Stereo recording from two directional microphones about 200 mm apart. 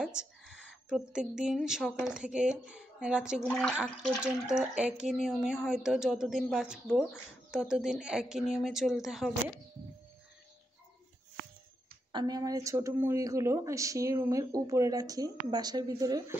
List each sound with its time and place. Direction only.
0.0 s a sound: 5° right (ahead or behind)
0.8 s speech: centre (ahead or behind)
12.1 s speech: 20° right (ahead or behind)